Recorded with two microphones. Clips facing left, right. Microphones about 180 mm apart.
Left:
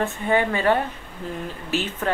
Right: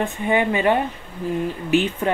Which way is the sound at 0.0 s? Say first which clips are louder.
Right 1 dB; 15° right (ahead or behind).